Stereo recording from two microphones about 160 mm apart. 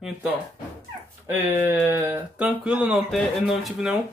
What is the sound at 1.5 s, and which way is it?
Speech, 15° right (ahead or behind).